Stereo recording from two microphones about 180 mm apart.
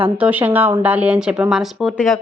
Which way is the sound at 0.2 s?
10° right (ahead or behind).